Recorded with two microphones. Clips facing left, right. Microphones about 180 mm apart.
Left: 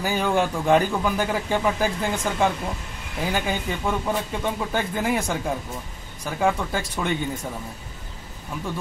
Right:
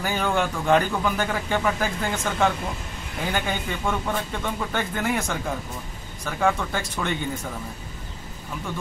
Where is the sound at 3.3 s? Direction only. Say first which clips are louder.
Left 1 dB; 10° left (ahead or behind).